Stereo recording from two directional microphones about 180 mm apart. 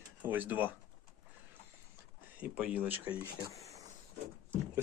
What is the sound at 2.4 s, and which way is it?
Speech, 5° right (ahead or behind).